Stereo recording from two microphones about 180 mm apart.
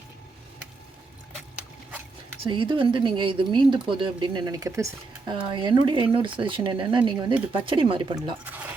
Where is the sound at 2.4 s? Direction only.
30° right (ahead or behind).